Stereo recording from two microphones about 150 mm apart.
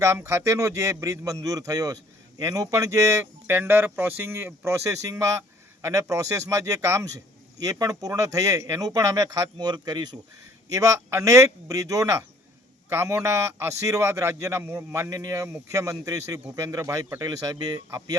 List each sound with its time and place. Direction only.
0.0 s a man's voice: 20° right (ahead or behind)